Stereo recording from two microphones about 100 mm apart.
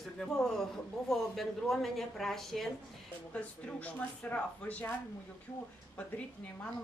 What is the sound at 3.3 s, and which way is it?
Speech, 15° left (ahead or behind).